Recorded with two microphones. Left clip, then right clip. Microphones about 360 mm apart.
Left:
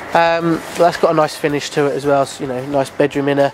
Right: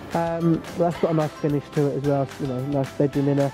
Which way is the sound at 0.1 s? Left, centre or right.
Centre.